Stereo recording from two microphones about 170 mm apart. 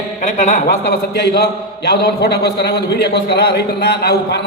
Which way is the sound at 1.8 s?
75° left (ahead or behind).